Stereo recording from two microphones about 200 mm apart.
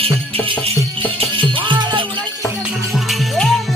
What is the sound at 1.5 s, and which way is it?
Music, 25° right (ahead or behind).